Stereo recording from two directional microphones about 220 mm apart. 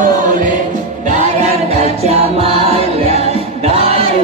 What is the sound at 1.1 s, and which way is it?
Music, 30° right (ahead or behind).